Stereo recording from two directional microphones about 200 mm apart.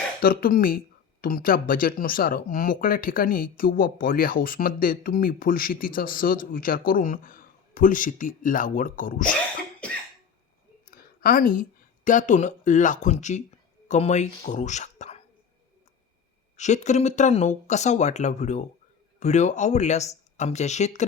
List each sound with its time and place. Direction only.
0.2 s speech: 45° left (ahead or behind)
10.9 s a sound: 45° left (ahead or behind)
12.0 s speech: 40° left (ahead or behind)
16.6 s speech: 35° left (ahead or behind)